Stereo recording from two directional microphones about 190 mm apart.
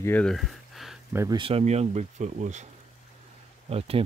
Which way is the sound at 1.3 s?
30° right (ahead or behind).